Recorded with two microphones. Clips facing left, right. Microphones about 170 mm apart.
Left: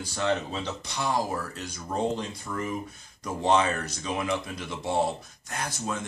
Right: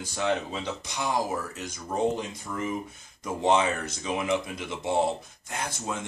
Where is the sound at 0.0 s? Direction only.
15° right (ahead or behind).